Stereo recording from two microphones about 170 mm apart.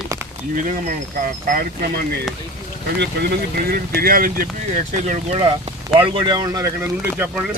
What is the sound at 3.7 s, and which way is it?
Speech, 60° right (ahead or behind).